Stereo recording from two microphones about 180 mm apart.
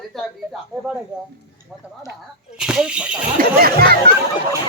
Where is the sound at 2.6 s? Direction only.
5° right (ahead or behind).